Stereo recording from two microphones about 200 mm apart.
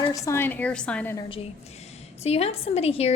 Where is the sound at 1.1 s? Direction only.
25° left (ahead or behind).